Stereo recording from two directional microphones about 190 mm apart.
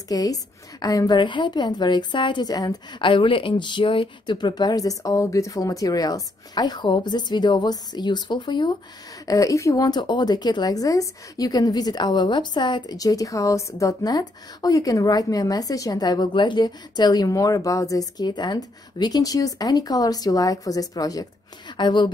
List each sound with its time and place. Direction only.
0.1 s speech: 20° left (ahead or behind)